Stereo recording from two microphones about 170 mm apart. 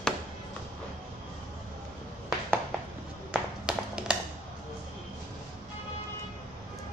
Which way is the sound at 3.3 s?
5° right (ahead or behind).